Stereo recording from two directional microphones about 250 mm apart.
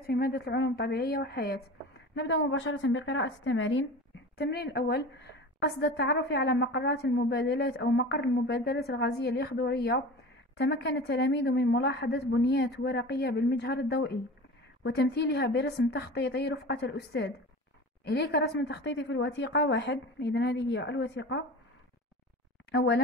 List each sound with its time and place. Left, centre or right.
0.0 s a woman's voice: left
22.7 s a woman's voice: left